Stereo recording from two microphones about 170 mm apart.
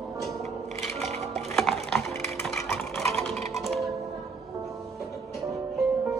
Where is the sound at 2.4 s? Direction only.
5° left (ahead or behind).